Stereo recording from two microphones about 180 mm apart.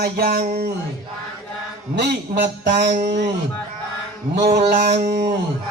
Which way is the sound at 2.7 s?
65° right (ahead or behind).